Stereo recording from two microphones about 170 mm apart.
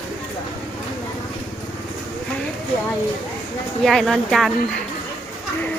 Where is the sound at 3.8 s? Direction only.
Centre (ahead or behind).